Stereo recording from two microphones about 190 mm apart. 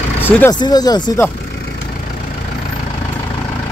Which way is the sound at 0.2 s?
10° left (ahead or behind).